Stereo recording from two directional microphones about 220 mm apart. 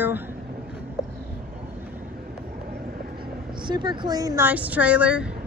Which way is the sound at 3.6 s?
20° right (ahead or behind).